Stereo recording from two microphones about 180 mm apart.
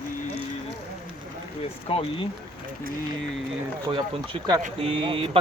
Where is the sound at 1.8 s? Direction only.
30° left (ahead or behind).